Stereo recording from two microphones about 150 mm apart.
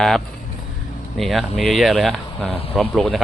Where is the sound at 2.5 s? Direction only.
40° left (ahead or behind).